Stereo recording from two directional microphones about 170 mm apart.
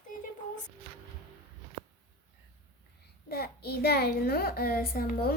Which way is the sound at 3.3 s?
70° left (ahead or behind).